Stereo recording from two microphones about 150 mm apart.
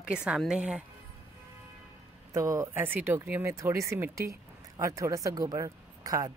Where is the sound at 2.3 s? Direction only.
20° right (ahead or behind).